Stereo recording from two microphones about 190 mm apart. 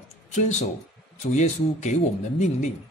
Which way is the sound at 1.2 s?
40° left (ahead or behind).